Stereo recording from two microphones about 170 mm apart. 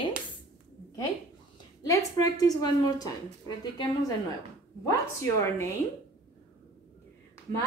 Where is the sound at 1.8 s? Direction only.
20° left (ahead or behind).